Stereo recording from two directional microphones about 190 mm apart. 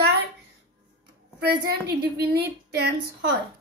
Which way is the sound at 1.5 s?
60° right (ahead or behind).